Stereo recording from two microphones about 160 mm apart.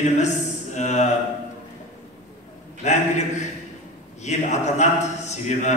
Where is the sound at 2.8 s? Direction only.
45° left (ahead or behind).